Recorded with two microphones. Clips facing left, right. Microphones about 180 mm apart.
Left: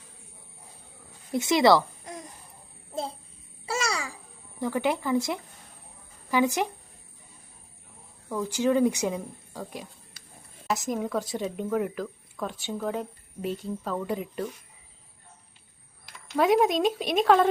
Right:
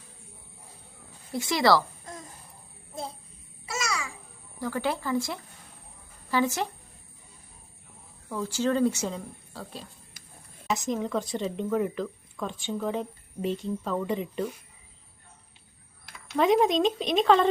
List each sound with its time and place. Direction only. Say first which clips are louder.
1.3 s speech: left 3 dB; 20° left (ahead or behind)
3.7 s babbling: left 3 dB; 30° left (ahead or behind)
4.6 s speech: left 3 dB; 20° left (ahead or behind)
8.3 s speech: left 2 dB; 15° left (ahead or behind)
10.7 s a woman's voice: even; centre (ahead or behind)
16.0 s speech: even; centre (ahead or behind)